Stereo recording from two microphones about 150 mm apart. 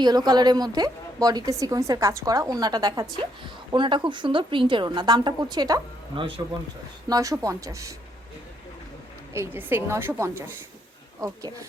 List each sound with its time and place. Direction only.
0.0 s a woman's voice: 25° right (ahead or behind)
7.1 s a woman's voice: 20° right (ahead or behind)
9.3 s a woman's voice: 15° right (ahead or behind)